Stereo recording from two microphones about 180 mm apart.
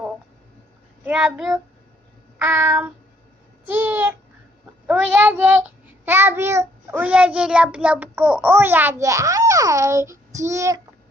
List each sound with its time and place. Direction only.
1.0 s a child's voice: 5° right (ahead or behind)